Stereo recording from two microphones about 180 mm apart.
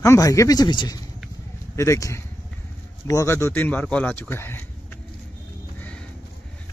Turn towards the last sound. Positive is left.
turn(degrees=10)  # may be behind; listen again after turning